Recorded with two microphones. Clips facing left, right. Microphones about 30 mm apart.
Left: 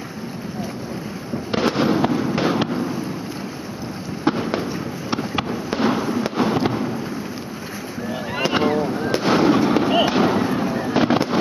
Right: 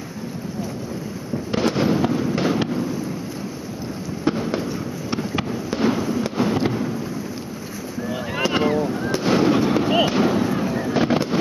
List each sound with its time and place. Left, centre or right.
1.5 s fireworks: centre
4.2 s fireworks: left
8.4 s boat: centre
8.7 s fireworks: centre